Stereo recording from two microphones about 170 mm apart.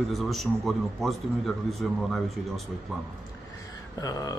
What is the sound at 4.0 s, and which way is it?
Speech, 20° left (ahead or behind).